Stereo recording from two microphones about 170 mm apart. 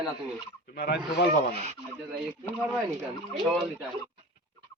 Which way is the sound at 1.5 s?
40° right (ahead or behind).